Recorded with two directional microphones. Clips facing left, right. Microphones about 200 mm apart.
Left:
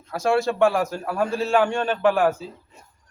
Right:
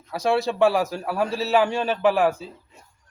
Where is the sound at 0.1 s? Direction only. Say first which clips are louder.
Left 1 dB; centre (ahead or behind).